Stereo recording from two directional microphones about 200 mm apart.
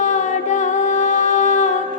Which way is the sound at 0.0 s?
35° left (ahead or behind).